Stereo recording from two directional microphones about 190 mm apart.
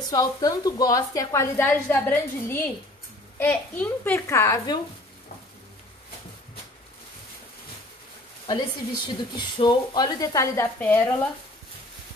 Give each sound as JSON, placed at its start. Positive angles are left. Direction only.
{"t": 0.1, "sound": "a woman's voice", "side_deg": 20}
{"t": 9.0, "sound": "a woman's voice", "side_deg": 25}